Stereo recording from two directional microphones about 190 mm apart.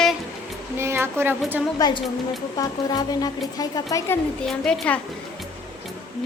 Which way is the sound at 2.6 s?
20° left (ahead or behind).